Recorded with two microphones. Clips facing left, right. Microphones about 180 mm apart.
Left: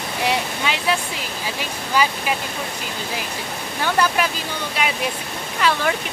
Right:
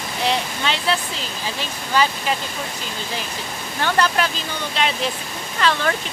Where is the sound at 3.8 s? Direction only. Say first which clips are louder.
Even; 10° left (ahead or behind).